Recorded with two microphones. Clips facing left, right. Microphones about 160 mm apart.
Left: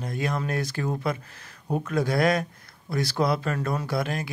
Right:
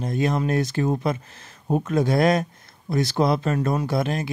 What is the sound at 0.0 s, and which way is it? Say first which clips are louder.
Speech: right 6 dB; 25° right (ahead or behind).